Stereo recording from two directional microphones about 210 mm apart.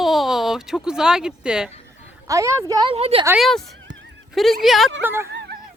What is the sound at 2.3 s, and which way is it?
Speech, 15° right (ahead or behind).